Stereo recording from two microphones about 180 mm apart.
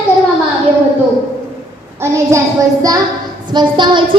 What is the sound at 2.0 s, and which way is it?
Child singing, 15° right (ahead or behind).